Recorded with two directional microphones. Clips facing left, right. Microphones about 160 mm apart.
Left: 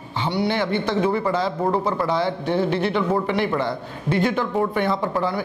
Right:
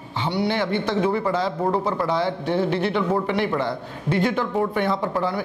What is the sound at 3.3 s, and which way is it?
Speech, 15° left (ahead or behind).